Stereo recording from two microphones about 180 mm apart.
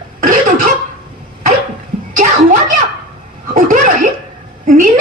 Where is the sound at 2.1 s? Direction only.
45° right (ahead or behind).